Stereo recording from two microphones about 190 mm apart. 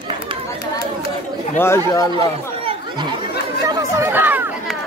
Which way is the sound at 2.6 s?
30° right (ahead or behind).